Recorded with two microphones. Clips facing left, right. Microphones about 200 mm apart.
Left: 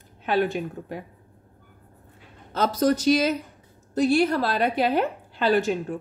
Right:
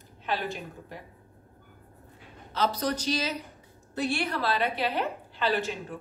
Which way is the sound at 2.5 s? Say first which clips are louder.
Left 7 dB; 50° left (ahead or behind).